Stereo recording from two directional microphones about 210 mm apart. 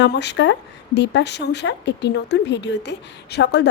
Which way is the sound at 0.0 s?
55° left (ahead or behind).